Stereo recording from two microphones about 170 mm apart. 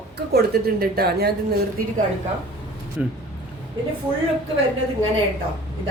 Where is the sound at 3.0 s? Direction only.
5° right (ahead or behind).